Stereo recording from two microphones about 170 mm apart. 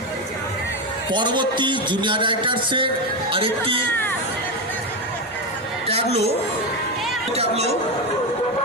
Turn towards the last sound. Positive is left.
turn(degrees=-40)  # may be behind; listen again after turning